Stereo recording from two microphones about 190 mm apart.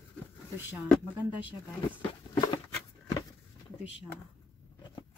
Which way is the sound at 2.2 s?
25° left (ahead or behind).